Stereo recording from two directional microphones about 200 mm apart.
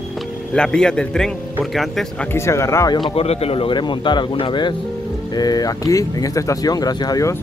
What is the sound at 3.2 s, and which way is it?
Speech, 30° left (ahead or behind).